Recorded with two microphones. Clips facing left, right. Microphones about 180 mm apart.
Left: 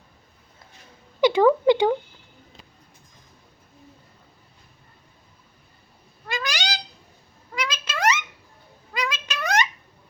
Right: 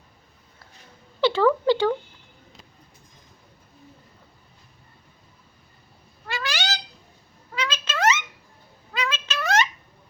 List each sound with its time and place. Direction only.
1.2 s a woman's voice: 15° left (ahead or behind)
6.2 s cat: 15° left (ahead or behind)
7.5 s a sound: 10° left (ahead or behind)